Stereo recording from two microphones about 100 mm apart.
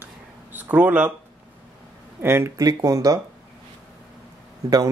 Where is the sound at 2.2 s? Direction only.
25° right (ahead or behind).